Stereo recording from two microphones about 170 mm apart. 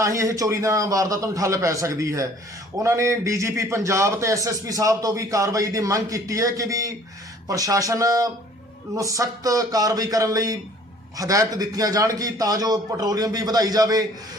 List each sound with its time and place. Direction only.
0.0 s a man's voice: 15° right (ahead or behind)